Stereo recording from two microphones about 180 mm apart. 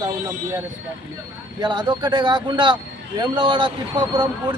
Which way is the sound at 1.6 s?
25° right (ahead or behind).